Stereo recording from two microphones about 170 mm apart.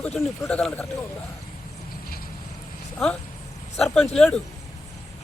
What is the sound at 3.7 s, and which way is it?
Speech, centre (ahead or behind).